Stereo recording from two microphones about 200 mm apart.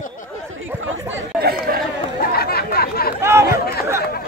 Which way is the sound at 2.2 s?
50° left (ahead or behind).